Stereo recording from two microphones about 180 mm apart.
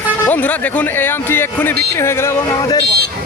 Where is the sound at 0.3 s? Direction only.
10° left (ahead or behind).